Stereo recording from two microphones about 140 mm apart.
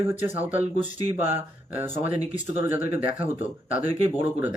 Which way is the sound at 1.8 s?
15° right (ahead or behind).